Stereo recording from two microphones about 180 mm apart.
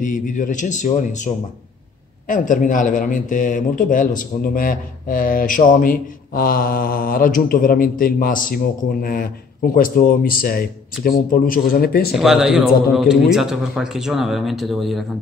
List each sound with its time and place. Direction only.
0.0 s a man's voice: 45° left (ahead or behind)
12.2 s a man's voice: 5° right (ahead or behind)